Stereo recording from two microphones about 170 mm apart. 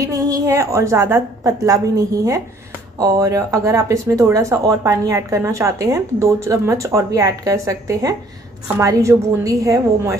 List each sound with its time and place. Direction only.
0.0 s a woman's voice: 20° right (ahead or behind)